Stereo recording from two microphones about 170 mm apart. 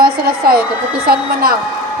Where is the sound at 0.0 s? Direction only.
60° right (ahead or behind).